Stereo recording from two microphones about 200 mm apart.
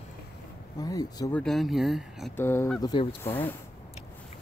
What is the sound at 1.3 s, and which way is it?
Speech, centre (ahead or behind).